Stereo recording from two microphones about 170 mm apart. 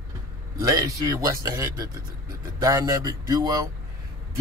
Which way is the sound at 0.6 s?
20° right (ahead or behind).